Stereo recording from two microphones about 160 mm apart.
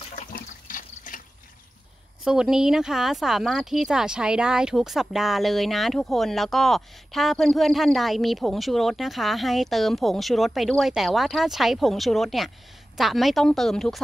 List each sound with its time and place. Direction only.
0.1 s toilet flush: 60° left (ahead or behind)
2.2 s speech: 5° right (ahead or behind)